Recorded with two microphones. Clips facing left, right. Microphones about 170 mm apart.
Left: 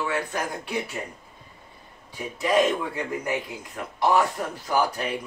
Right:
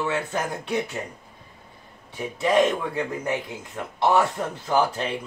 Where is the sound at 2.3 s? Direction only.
25° right (ahead or behind).